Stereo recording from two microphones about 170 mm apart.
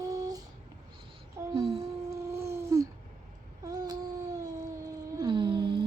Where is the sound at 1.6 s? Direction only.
35° right (ahead or behind).